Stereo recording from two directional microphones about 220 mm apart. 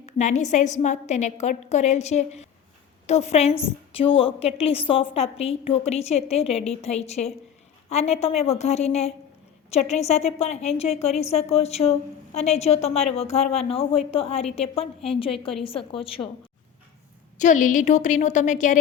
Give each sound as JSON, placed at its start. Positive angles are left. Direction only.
{"t": 0.0, "sound": "a woman's voice", "side_deg": 30}
{"t": 17.3, "sound": "a woman's voice", "side_deg": 35}